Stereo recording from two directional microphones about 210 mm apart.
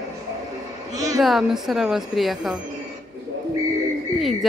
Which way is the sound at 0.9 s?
15° right (ahead or behind).